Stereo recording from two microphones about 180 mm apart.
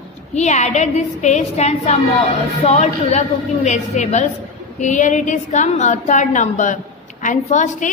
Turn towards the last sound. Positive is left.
turn(degrees=45)  # may be behind; listen again after turning